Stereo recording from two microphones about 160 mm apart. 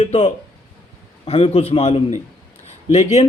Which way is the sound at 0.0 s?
40° left (ahead or behind).